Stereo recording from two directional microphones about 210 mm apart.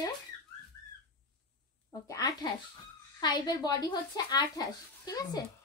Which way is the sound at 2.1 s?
15° left (ahead or behind).